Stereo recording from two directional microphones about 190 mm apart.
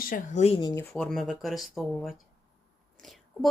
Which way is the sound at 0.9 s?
Centre (ahead or behind).